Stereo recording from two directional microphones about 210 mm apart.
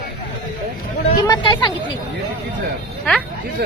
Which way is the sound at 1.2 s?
20° left (ahead or behind).